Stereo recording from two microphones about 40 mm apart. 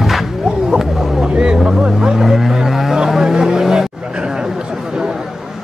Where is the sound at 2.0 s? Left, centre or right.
Centre.